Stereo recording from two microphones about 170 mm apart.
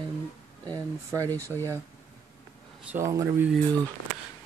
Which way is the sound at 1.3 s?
10° left (ahead or behind).